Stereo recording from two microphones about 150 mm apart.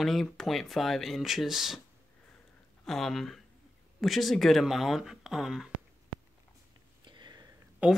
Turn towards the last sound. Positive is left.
turn(degrees=-10)  # may be behind; listen again after turning